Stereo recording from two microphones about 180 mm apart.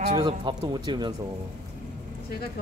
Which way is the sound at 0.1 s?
25° right (ahead or behind).